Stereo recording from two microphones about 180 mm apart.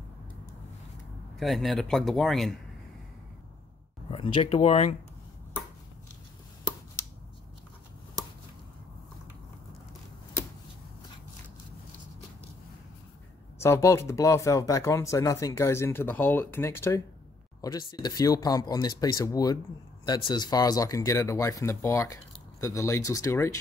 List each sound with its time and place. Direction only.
1.4 s speech: centre (ahead or behind)
4.1 s speech: 35° left (ahead or behind)
13.6 s speech: 15° left (ahead or behind)